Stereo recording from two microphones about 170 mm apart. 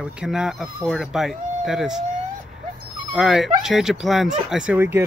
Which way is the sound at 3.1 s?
Centre (ahead or behind).